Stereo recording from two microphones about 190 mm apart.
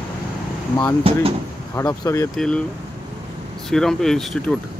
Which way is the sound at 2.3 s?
5° left (ahead or behind).